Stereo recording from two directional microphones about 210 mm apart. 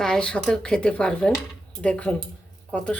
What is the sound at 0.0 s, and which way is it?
Speech, 5° left (ahead or behind).